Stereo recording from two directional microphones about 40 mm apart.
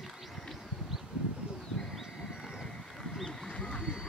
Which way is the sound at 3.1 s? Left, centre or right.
Centre.